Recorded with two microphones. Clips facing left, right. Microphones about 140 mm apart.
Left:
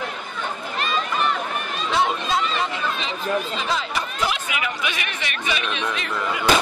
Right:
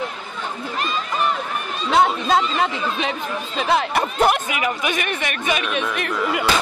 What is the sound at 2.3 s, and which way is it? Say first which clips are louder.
Speech: right 4 dB; 60° right (ahead or behind).